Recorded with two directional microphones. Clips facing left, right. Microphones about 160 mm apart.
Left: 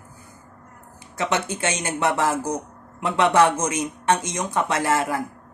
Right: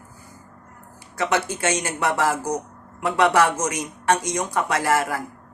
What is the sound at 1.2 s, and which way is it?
Speech, 20° left (ahead or behind).